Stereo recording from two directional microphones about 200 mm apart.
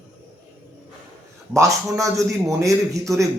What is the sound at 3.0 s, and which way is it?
Speech, centre (ahead or behind).